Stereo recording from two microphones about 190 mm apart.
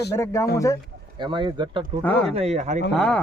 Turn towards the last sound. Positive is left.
turn(degrees=5)  # may be behind; listen again after turning